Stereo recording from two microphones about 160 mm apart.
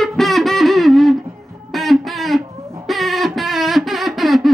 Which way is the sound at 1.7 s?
Centre (ahead or behind).